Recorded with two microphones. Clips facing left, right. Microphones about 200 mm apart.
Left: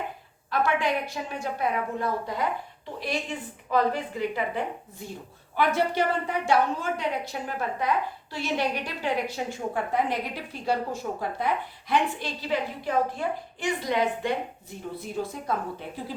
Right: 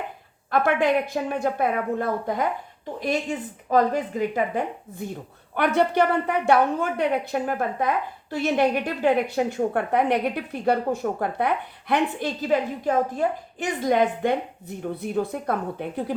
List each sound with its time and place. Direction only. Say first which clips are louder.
0.5 s a woman's voice: right 5 dB; 55° right (ahead or behind)
5.5 s a woman's voice: right 4 dB; 60° right (ahead or behind)
15.0 s a woman's voice: right 6 dB; 60° right (ahead or behind)